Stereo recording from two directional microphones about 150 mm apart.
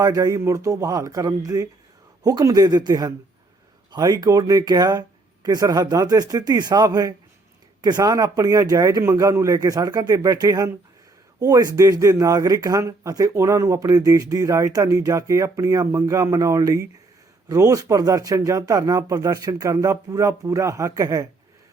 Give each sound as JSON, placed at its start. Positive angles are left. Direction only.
{"t": 0.0, "sound": "speech", "side_deg": -25}